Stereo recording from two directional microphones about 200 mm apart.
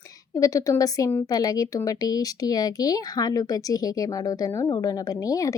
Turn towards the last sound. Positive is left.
turn(degrees=15)  # may be behind; listen again after turning